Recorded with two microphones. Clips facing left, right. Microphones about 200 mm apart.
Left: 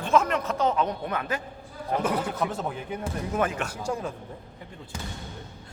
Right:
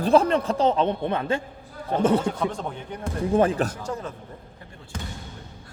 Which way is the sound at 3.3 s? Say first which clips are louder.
Right 7 dB; 30° right (ahead or behind).